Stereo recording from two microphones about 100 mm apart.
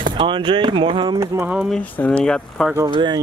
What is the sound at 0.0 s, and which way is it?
Speech, 55° right (ahead or behind).